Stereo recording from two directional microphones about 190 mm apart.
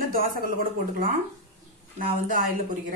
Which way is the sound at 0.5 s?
50° right (ahead or behind).